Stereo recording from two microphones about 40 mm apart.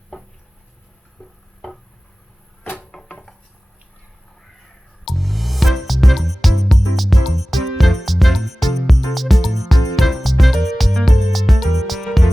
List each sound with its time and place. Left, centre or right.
2.9 s wood: left
5.0 s music: centre